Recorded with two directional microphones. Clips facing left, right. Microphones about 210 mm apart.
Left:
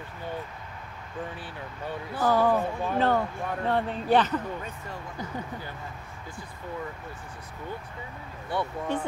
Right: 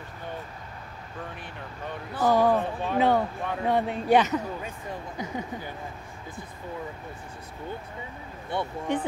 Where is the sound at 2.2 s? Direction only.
15° right (ahead or behind).